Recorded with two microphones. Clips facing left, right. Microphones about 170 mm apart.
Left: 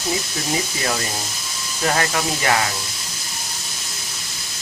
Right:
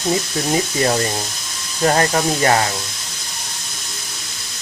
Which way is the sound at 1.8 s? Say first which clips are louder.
Right 5 dB; 35° right (ahead or behind).